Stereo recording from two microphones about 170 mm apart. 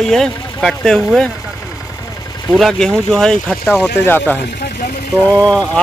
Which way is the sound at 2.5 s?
Centre (ahead or behind).